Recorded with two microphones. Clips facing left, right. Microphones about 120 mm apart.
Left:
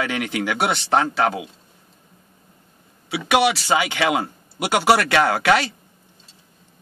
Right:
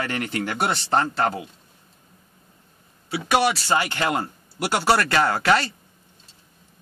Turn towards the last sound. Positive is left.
turn(degrees=65)  # may be behind; listen again after turning